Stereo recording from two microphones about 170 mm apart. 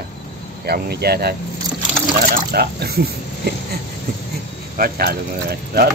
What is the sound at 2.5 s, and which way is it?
Speech, 65° right (ahead or behind).